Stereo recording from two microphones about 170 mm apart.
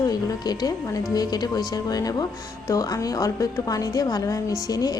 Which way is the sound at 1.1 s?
25° left (ahead or behind).